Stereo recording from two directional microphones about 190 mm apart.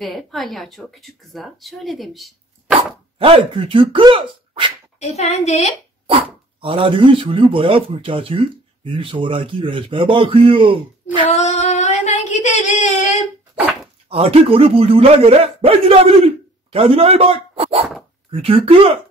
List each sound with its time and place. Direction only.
0.0 s speech: centre (ahead or behind)
3.2 s a man's voice: 30° right (ahead or behind)
4.9 s a woman's voice: 35° left (ahead or behind)
6.6 s a man's voice: 25° right (ahead or behind)
11.1 s a sound: 35° left (ahead or behind)
14.0 s a man's voice: 30° right (ahead or behind)